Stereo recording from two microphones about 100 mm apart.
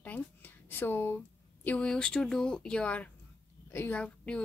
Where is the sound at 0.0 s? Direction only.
15° left (ahead or behind).